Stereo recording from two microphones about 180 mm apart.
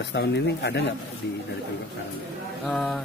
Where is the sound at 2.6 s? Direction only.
Centre (ahead or behind).